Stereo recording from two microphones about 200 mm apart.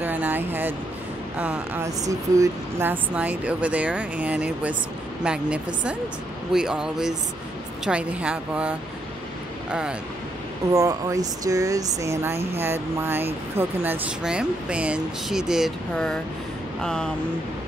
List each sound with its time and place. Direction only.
0.0 s a sound: 10° right (ahead or behind)
1.4 s speech: 5° right (ahead or behind)
10.7 s speech: 15° right (ahead or behind); by 17.1 s 5° left (ahead or behind)